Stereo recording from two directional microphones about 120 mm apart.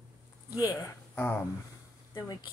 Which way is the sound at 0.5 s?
30° left (ahead or behind).